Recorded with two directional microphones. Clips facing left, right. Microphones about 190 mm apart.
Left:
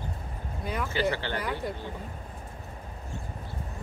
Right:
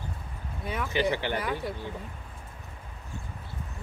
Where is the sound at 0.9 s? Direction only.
15° right (ahead or behind).